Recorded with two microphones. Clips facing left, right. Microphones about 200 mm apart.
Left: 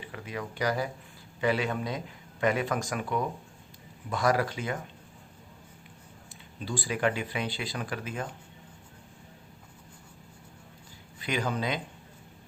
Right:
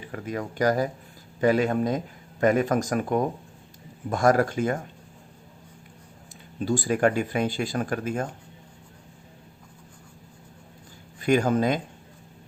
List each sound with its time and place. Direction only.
0.1 s speech: 45° right (ahead or behind)
6.6 s speech: 45° right (ahead or behind)
11.2 s speech: 45° right (ahead or behind)